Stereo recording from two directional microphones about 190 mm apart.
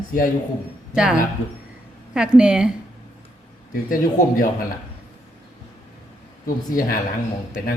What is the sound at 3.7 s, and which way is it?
Speech, 45° left (ahead or behind).